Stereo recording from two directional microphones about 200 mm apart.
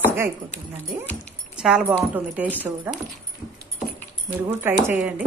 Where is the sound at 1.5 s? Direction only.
5° right (ahead or behind).